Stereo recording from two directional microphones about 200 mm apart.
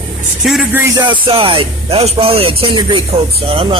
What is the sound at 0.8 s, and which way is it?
Speech, 20° right (ahead or behind).